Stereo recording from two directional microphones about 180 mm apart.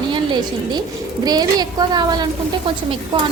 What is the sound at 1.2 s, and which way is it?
A woman's voice, 20° right (ahead or behind).